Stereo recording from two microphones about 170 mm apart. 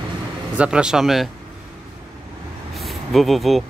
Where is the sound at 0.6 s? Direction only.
5° right (ahead or behind).